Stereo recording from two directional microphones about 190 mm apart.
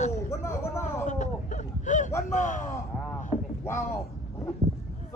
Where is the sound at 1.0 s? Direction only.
40° left (ahead or behind).